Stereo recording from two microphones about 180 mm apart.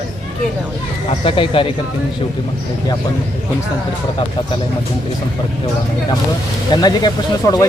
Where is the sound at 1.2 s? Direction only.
30° left (ahead or behind).